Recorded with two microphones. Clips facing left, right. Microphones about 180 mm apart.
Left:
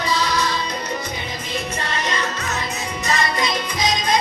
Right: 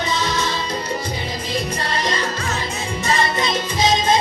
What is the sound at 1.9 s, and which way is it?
Music, 35° right (ahead or behind).